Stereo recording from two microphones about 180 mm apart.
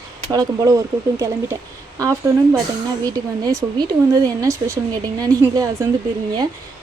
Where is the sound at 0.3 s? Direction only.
20° right (ahead or behind).